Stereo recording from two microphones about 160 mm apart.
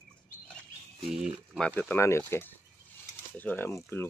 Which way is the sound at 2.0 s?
15° left (ahead or behind).